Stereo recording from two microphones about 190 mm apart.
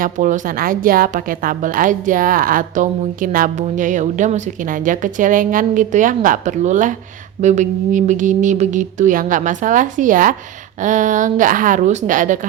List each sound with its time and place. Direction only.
0.0 s a woman's voice: 45° right (ahead or behind)